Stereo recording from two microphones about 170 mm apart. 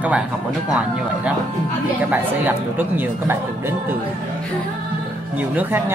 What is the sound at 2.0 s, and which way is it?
Speech, 10° right (ahead or behind).